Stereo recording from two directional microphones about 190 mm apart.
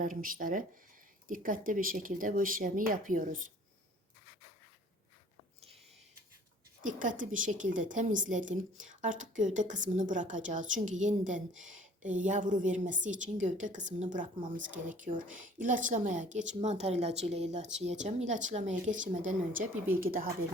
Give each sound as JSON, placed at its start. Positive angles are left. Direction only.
{"t": 0.0, "sound": "speech", "side_deg": -45}
{"t": 6.8, "sound": "a woman's voice", "side_deg": -45}